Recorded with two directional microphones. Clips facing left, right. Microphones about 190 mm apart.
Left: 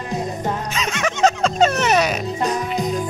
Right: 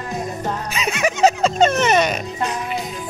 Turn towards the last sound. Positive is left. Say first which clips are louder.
# left 4 dB
turn(degrees=40)  # may be behind; listen again after turning